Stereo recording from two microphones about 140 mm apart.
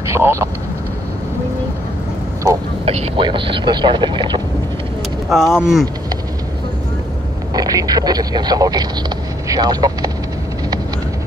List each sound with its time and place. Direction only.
0.0 s vehicle: 20° right (ahead or behind)
2.8 s speech: 50° right (ahead or behind)
3.2 s speech: 35° right (ahead or behind)
5.3 s speech: centre (ahead or behind)
7.5 s speech: 25° right (ahead or behind)